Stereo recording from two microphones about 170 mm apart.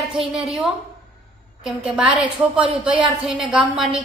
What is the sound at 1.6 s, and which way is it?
A woman's voice, 5° right (ahead or behind).